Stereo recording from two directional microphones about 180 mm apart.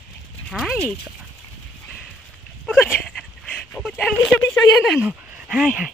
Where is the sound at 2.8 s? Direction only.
10° left (ahead or behind).